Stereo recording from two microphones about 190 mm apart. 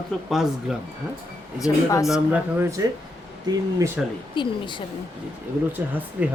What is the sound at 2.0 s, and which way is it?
Speech, 5° right (ahead or behind).